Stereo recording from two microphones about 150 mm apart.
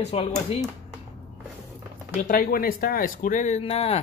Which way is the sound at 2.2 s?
70° left (ahead or behind).